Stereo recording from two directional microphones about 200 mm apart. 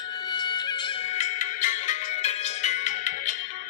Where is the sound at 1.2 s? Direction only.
35° left (ahead or behind).